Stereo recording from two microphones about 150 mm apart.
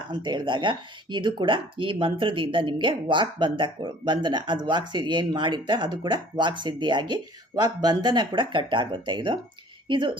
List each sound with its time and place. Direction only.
0.1 s speech: 30° right (ahead or behind)